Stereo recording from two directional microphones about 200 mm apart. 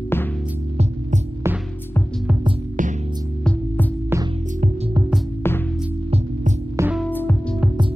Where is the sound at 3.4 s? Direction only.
5° left (ahead or behind).